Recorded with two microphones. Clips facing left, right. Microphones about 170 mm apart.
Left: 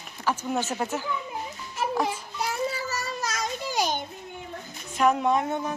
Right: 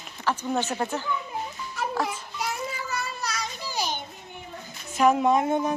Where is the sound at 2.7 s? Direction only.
40° left (ahead or behind).